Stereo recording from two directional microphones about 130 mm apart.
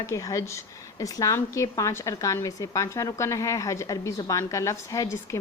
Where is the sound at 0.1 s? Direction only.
25° left (ahead or behind).